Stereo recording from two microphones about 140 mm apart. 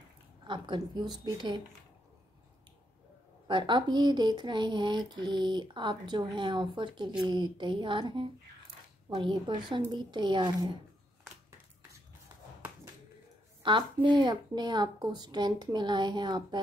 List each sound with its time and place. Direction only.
0.4 s a woman's voice: 35° right (ahead or behind)
3.4 s speech: 35° right (ahead or behind)
13.6 s a sound: 35° right (ahead or behind)
14.0 s speech: 35° right (ahead or behind)